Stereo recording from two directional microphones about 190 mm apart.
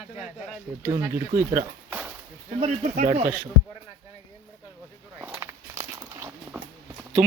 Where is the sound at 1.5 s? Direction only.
10° right (ahead or behind).